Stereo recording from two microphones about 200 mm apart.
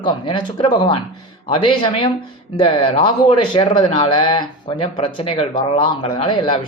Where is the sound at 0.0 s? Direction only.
25° left (ahead or behind).